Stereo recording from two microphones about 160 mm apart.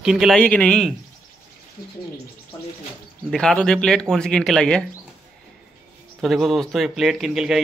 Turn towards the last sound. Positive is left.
turn(degrees=-5)  # may be behind; listen again after turning